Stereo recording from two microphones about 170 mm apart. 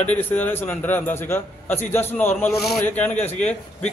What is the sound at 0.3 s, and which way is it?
A man's voice, 10° left (ahead or behind).